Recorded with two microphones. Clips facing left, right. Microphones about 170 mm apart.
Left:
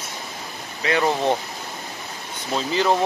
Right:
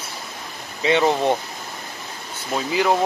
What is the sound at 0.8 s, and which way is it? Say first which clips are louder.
Speech: right 3 dB; 20° right (ahead or behind).